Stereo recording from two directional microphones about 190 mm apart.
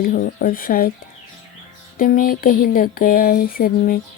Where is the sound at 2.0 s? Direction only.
45° left (ahead or behind).